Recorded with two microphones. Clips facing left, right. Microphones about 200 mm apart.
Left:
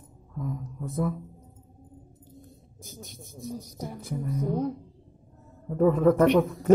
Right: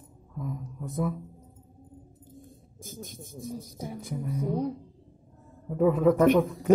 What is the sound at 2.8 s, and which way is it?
Speech, 50° right (ahead or behind).